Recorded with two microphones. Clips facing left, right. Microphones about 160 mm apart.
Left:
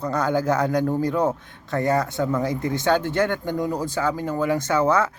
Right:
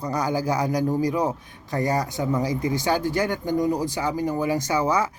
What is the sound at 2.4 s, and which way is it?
Speech, 55° left (ahead or behind).